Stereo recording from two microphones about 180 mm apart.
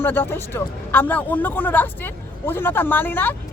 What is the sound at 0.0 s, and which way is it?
Speech, 10° left (ahead or behind).